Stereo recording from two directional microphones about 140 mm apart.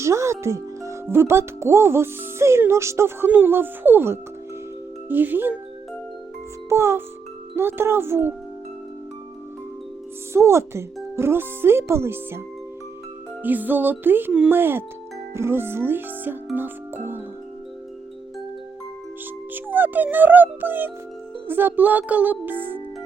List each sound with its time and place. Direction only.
0.0 s speech: 20° right (ahead or behind)
6.7 s speech: 20° right (ahead or behind)
10.3 s speech: 20° right (ahead or behind)
13.4 s speech: 10° right (ahead or behind)
19.5 s speech: 15° right (ahead or behind)